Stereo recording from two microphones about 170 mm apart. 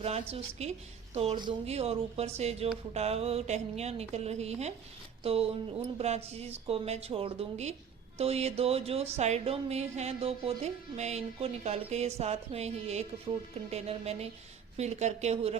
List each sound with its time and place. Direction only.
0.0 s a woman's voice: 35° right (ahead or behind)